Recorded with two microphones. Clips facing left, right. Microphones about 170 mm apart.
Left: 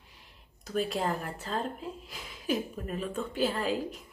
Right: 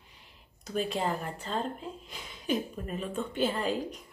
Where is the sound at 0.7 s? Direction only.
Centre (ahead or behind).